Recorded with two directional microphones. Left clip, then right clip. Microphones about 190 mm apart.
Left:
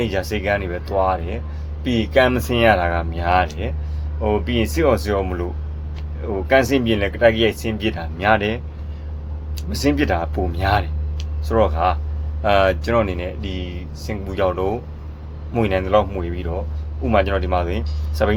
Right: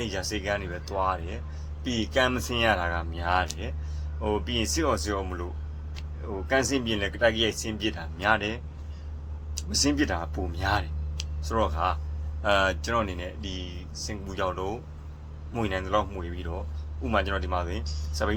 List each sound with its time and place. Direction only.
0.0 s speech: 5° right (ahead or behind)
3.4 s speech: 20° right (ahead or behind)
9.7 s speech: 10° right (ahead or behind)